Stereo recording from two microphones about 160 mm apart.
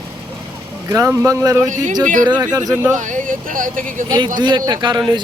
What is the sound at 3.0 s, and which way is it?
Speech, 50° right (ahead or behind).